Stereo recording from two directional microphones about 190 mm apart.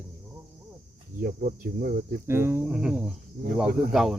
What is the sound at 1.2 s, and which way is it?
Speech, 50° right (ahead or behind).